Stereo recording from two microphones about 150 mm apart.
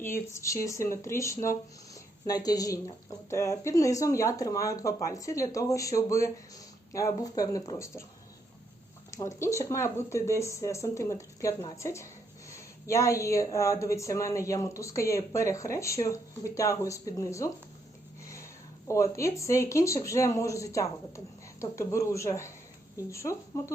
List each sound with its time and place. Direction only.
0.0 s a woman's voice: 20° left (ahead or behind)
9.0 s a woman's voice: 20° left (ahead or behind)
18.9 s a woman's voice: 20° left (ahead or behind)